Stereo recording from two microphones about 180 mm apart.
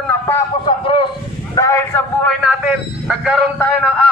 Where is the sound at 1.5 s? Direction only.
15° left (ahead or behind).